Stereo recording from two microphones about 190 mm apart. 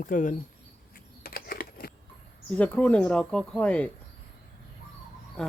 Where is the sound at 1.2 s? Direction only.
50° left (ahead or behind).